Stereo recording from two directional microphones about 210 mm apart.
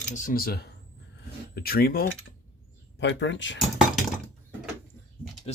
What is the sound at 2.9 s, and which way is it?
Speech, 60° left (ahead or behind).